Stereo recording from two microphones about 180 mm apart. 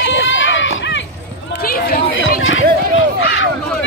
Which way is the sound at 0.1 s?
90° left.